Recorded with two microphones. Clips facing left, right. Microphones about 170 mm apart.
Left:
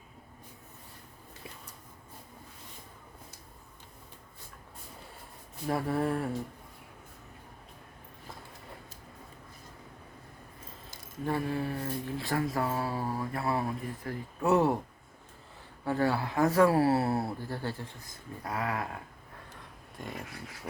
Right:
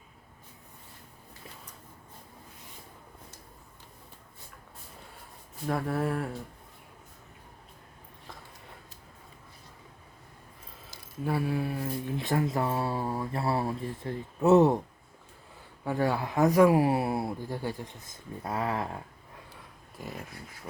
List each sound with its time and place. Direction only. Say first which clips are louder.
5.6 s speech: even; centre (ahead or behind)
11.3 s mantra: right 2 dB; 10° right (ahead or behind)
15.8 s speech: even; 15° right (ahead or behind)
20.0 s speech: even; 5° right (ahead or behind)